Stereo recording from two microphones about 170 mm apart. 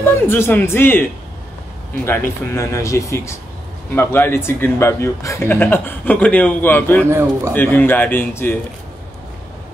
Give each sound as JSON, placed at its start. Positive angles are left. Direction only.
{"t": 0.0, "sound": "speech", "side_deg": 15}
{"t": 2.0, "sound": "speech", "side_deg": 15}
{"t": 7.1, "sound": "speech", "side_deg": -15}
{"t": 7.5, "sound": "speech", "side_deg": 10}